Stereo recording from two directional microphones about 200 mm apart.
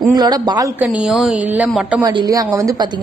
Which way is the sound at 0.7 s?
5° right (ahead or behind).